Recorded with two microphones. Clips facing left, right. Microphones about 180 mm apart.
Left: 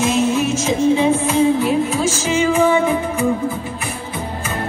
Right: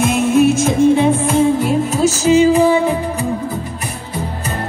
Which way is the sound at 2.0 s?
40° right (ahead or behind).